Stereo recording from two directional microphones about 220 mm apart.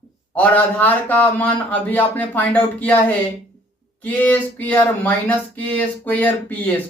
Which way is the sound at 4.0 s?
5° left (ahead or behind).